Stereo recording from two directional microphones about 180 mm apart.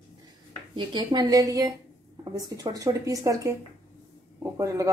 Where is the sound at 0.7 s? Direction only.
25° right (ahead or behind).